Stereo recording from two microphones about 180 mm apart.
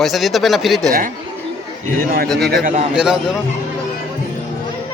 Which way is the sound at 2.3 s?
Centre (ahead or behind).